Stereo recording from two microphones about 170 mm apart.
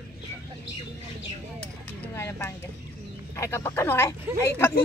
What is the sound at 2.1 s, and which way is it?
Speech, 15° left (ahead or behind).